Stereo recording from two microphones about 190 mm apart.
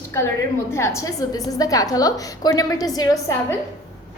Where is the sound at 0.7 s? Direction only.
15° left (ahead or behind).